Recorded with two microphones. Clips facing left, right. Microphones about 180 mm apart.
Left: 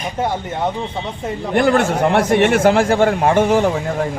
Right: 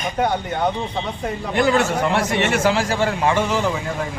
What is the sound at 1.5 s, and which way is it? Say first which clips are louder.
A man's voice: left 3 dB; 55° left (ahead or behind).